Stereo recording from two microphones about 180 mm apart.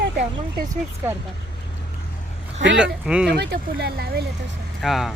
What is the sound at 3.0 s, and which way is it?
Speech, 5° right (ahead or behind).